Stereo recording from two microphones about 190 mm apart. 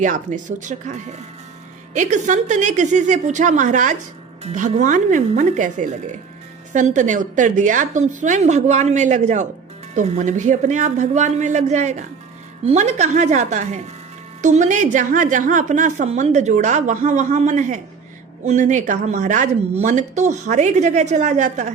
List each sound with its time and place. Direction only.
0.0 s a woman's voice: 40° right (ahead or behind)